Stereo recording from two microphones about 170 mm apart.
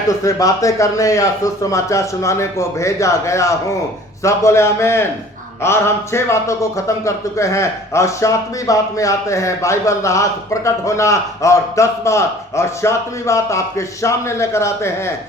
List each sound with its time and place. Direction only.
0.1 s a man's voice: 20° left (ahead or behind)